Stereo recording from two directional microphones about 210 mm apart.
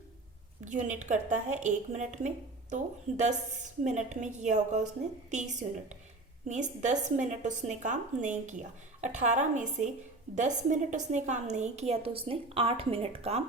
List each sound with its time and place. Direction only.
0.6 s a woman's voice: 35° right (ahead or behind)
6.5 s a woman's voice: 35° right (ahead or behind)